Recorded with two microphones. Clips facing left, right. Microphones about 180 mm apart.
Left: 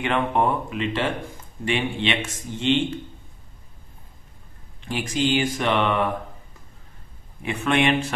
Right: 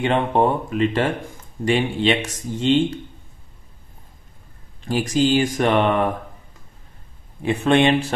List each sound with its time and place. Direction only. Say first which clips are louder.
0.0 s speech: right 4 dB; 30° right (ahead or behind)
0.7 s speech: right 5 dB; 45° right (ahead or behind)
4.8 s speech: right 5 dB; 40° right (ahead or behind)
7.4 s speech: right 5 dB; 30° right (ahead or behind)